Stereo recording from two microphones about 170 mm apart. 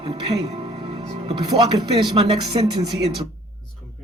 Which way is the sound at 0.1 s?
30° right (ahead or behind).